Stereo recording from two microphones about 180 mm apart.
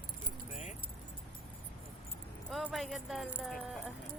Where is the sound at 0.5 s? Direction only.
40° left (ahead or behind).